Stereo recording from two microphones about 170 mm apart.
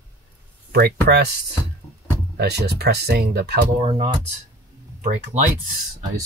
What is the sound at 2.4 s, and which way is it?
Speech, 75° right (ahead or behind).